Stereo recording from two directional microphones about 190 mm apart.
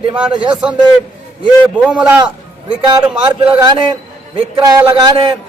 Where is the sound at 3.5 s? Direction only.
20° right (ahead or behind).